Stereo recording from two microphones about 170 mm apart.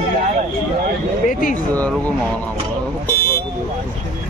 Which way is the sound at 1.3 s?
50° left (ahead or behind).